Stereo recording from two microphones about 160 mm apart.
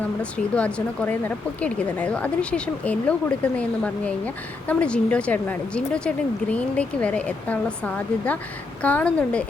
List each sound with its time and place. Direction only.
0.2 s speech: 5° left (ahead or behind)